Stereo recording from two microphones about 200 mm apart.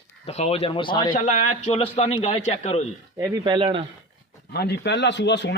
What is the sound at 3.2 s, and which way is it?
Speech, 25° right (ahead or behind).